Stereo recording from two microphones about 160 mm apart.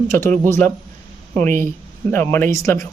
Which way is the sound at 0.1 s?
15° left (ahead or behind).